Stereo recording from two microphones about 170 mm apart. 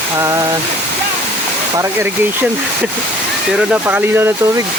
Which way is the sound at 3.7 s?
10° right (ahead or behind).